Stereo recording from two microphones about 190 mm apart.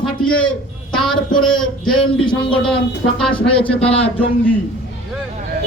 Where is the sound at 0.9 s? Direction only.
5° left (ahead or behind).